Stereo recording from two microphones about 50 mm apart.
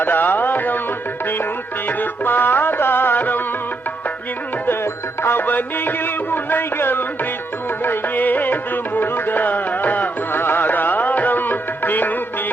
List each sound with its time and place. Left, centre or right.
0.0 s music: left
1.9 s music: left
4.6 s music: left
5.4 s music: left